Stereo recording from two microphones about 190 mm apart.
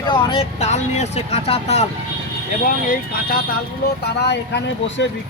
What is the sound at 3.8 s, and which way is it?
Speech, 60° left (ahead or behind).